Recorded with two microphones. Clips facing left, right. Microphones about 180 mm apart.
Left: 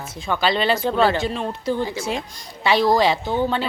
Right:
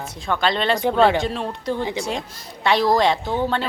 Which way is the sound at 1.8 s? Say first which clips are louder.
Right 1 dB; 20° right (ahead or behind).